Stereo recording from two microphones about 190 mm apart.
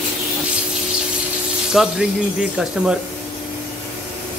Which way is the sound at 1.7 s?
5° right (ahead or behind).